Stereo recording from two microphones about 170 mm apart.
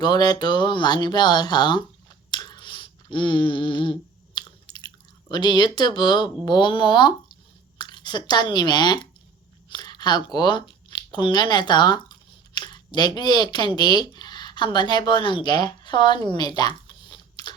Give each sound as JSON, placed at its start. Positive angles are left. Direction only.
{"t": 0.0, "sound": "speech", "side_deg": 25}
{"t": 4.4, "sound": "chewing", "side_deg": 25}
{"t": 5.3, "sound": "speech", "side_deg": 25}